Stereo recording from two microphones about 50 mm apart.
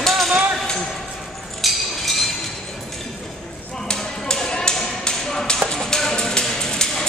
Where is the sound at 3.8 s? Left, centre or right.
Centre.